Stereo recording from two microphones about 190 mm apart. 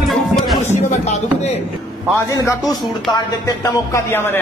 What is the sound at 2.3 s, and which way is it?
A man's voice, 20° left (ahead or behind).